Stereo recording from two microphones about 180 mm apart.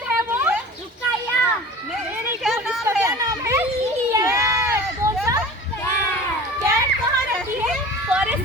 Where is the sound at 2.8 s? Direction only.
15° right (ahead or behind).